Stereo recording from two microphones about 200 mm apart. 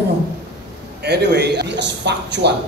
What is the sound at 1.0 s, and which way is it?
A man's voice, 55° right (ahead or behind).